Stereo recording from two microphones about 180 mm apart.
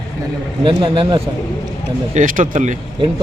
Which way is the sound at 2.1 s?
45° right (ahead or behind).